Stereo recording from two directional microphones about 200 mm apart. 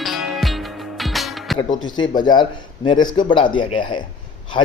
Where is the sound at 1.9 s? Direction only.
20° left (ahead or behind).